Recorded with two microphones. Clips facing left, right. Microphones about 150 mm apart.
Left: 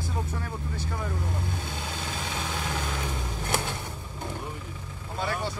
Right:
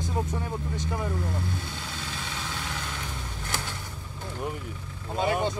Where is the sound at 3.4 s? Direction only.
20° left (ahead or behind).